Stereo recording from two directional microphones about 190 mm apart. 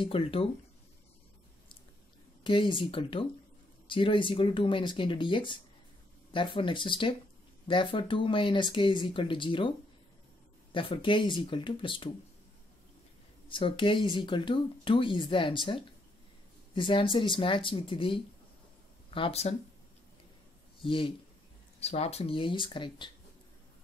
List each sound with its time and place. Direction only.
0.0 s speech: 30° left (ahead or behind)
2.4 s speech: 25° left (ahead or behind)
10.7 s speech: 25° left (ahead or behind)
13.5 s speech: 25° left (ahead or behind)
20.8 s speech: 25° left (ahead or behind)